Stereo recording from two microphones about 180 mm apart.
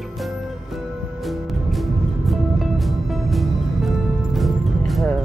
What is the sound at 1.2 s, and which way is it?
Music, centre (ahead or behind).